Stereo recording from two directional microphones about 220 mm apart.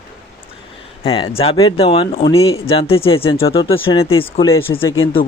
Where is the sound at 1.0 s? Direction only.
25° left (ahead or behind).